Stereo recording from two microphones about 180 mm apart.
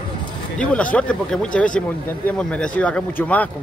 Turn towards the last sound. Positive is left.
turn(degrees=10)  # may be behind; listen again after turning